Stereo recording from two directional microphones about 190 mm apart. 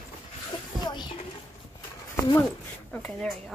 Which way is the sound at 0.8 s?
25° left (ahead or behind).